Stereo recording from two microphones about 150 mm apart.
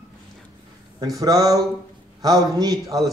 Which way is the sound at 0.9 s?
25° right (ahead or behind).